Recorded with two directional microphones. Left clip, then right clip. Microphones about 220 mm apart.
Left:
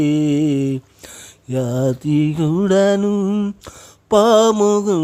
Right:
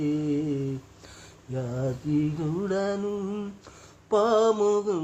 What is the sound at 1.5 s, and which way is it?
Mantra, 50° left (ahead or behind).